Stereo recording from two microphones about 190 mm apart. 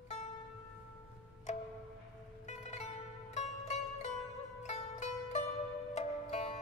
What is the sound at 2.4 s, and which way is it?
Music, 35° left (ahead or behind).